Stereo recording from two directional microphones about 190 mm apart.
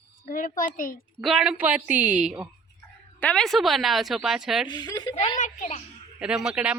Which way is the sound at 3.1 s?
5° left (ahead or behind).